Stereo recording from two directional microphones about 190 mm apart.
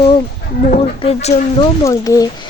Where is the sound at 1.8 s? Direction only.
15° left (ahead or behind).